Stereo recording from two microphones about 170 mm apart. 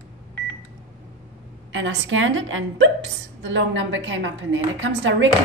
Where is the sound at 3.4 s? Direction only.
90° right.